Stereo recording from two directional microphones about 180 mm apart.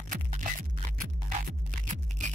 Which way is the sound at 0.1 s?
45° right (ahead or behind).